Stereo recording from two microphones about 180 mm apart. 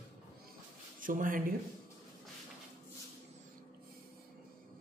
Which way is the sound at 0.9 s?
50° right (ahead or behind).